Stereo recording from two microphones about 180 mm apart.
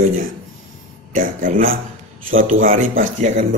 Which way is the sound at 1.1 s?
50° right (ahead or behind).